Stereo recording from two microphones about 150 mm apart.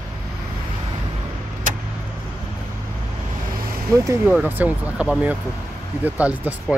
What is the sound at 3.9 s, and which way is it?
Speech, 20° right (ahead or behind).